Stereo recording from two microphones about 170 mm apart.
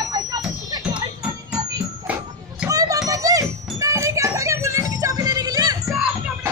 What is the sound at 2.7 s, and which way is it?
Music, 20° right (ahead or behind).